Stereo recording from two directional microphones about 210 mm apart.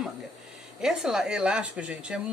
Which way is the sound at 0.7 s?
5° right (ahead or behind).